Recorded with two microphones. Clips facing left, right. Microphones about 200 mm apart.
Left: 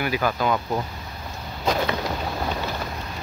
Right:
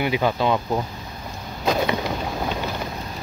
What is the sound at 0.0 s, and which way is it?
Speech, 20° right (ahead or behind).